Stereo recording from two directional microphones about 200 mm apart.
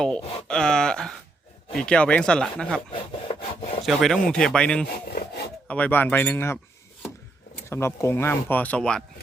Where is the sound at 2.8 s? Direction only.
25° left (ahead or behind).